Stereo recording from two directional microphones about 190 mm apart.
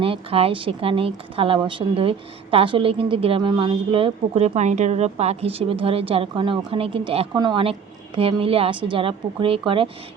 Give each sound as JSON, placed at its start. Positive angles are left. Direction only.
{"t": 0.0, "sound": "a woman's voice", "side_deg": -30}